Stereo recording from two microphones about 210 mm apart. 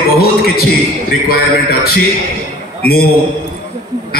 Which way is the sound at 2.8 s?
45° left (ahead or behind).